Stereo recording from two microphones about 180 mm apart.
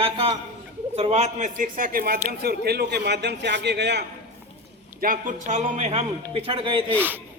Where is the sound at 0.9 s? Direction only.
35° right (ahead or behind); by 4.0 s 70° right (ahead or behind).